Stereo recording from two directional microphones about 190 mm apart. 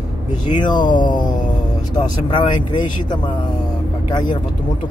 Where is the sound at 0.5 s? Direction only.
25° left (ahead or behind).